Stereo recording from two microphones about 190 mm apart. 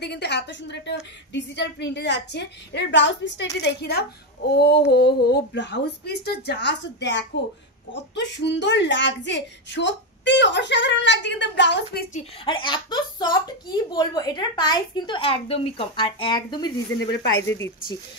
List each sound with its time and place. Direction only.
0.0 s speech: 60° left (ahead or behind)
12.4 s speech: 25° left (ahead or behind)